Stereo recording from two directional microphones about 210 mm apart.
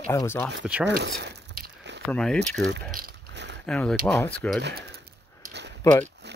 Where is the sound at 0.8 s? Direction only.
55° right (ahead or behind).